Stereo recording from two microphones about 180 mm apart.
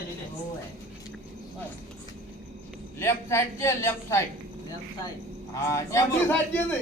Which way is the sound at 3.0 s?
15° left (ahead or behind).